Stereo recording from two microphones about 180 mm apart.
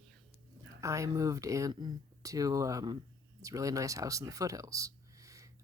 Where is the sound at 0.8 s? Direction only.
15° right (ahead or behind).